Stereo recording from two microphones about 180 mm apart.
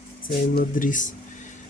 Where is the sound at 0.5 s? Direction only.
50° left (ahead or behind).